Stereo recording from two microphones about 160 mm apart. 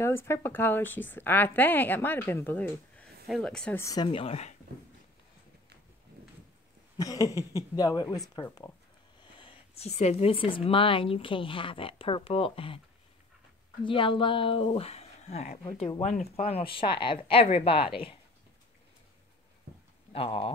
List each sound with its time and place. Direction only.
0.0 s a woman's voice: 15° left (ahead or behind)
3.8 s a sound: 25° left (ahead or behind)
4.1 s speech: 35° left (ahead or behind)
7.0 s a sound: 20° left (ahead or behind)
9.2 s speech: 30° left (ahead or behind)
13.8 s speech: 30° left (ahead or behind)
20.1 s speech: 35° left (ahead or behind)